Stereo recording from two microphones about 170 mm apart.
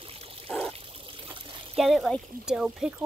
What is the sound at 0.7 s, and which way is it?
Trickle, 35° right (ahead or behind).